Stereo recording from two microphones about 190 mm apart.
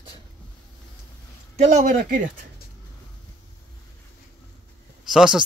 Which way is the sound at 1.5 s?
35° right (ahead or behind).